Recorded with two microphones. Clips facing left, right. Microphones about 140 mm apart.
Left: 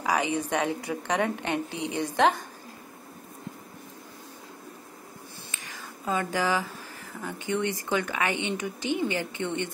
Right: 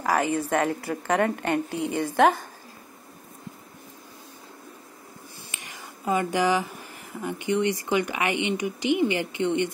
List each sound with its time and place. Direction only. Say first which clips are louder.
0.3 s a woman's voice: right 3 dB; centre (ahead or behind)
5.5 s a sound: right 1 dB; 15° right (ahead or behind)
7.9 s speech: right 3 dB; 15° right (ahead or behind)